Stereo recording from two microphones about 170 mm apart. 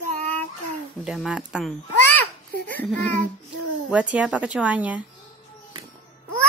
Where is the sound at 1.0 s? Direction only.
5° right (ahead or behind).